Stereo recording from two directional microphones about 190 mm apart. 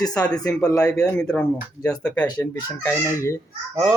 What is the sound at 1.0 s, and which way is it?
A man's voice, 5° left (ahead or behind).